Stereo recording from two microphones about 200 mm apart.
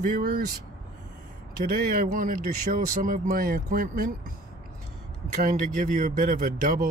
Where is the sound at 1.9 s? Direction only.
45° right (ahead or behind).